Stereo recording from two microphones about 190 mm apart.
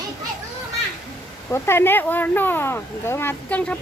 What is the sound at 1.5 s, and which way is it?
Speech, 15° left (ahead or behind).